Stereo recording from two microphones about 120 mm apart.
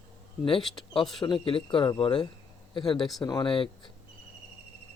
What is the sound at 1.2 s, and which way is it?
Speech, 45° left (ahead or behind).